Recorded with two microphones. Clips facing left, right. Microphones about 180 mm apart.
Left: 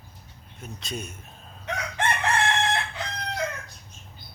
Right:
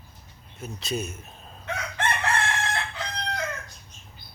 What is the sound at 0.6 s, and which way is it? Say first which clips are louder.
Speech: right 5 dB; 5° right (ahead or behind).